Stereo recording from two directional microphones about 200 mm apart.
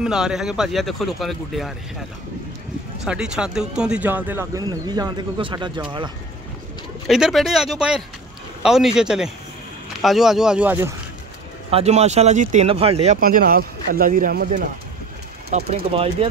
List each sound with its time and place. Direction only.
0.0 s a man's voice: 5° right (ahead or behind)
3.0 s speech: 5° right (ahead or behind); by 5.7 s 25° right (ahead or behind)
7.1 s a man's voice: centre (ahead or behind)
11.7 s speech: 30° right (ahead or behind)
15.5 s speech: 35° right (ahead or behind)